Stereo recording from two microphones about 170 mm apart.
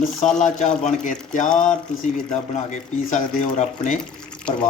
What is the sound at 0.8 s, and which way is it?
Speech, 45° left (ahead or behind).